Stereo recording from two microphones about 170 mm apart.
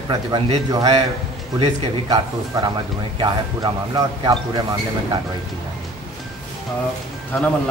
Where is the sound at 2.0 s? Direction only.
20° right (ahead or behind).